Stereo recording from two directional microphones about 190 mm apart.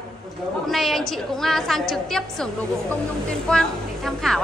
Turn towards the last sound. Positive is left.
turn(degrees=0)  # may be behind; listen again after turning